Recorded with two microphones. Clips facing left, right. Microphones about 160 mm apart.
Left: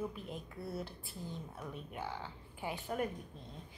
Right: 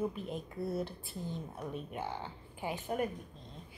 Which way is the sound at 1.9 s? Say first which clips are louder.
Right 3 dB; 20° right (ahead or behind).